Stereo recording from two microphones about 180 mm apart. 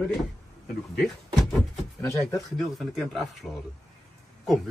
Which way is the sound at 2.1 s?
15° left (ahead or behind).